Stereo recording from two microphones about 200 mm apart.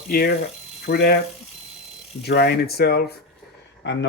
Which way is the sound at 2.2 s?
55° left (ahead or behind).